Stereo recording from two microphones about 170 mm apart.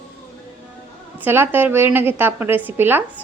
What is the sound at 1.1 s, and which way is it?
A woman's voice, 10° right (ahead or behind).